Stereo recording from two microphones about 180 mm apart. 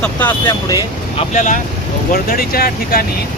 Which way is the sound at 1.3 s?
45° left (ahead or behind).